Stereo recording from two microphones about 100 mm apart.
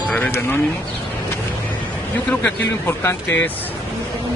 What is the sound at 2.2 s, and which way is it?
Speech, 15° left (ahead or behind).